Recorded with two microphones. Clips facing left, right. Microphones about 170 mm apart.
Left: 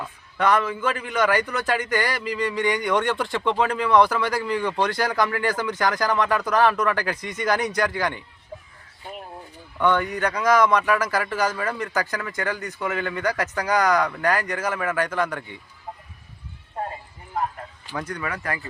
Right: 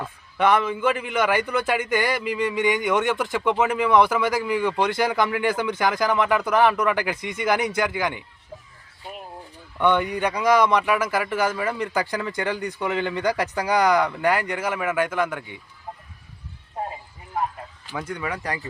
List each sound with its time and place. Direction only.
0.4 s speech: 10° right (ahead or behind)
9.7 s speech: 15° right (ahead or behind)
11.3 s speech: 25° right (ahead or behind)
11.6 s speech: 10° right (ahead or behind)
12.1 s speech: 30° right (ahead or behind)
12.4 s speech: 15° right (ahead or behind)
14.2 s speech: 25° right (ahead or behind)
14.5 s speech: 10° right (ahead or behind)
17.9 s speech: 10° right (ahead or behind)